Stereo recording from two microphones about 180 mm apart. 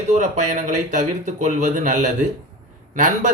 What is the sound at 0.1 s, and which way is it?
Speech, 40° right (ahead or behind).